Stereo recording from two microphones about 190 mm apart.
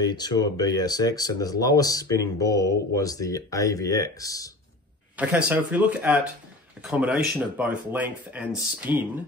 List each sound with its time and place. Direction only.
0.0 s speech: 20° left (ahead or behind)
5.1 s speech: 10° right (ahead or behind)